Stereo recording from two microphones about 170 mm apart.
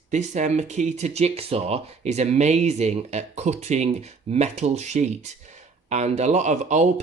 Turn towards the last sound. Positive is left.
turn(degrees=-45)  # may be behind; listen again after turning